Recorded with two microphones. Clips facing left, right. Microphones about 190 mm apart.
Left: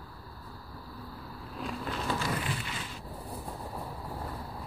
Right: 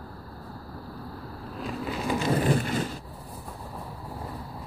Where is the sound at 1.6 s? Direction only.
5° right (ahead or behind).